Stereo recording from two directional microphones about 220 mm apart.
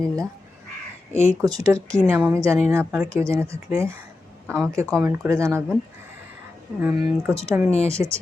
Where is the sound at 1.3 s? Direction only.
15° right (ahead or behind).